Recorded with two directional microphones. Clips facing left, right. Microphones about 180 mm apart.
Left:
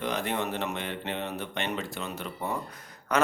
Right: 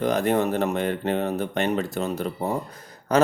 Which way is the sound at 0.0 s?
45° right (ahead or behind).